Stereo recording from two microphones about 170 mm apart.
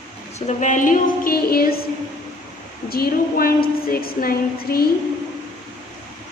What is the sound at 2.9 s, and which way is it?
A woman's voice, 60° left (ahead or behind).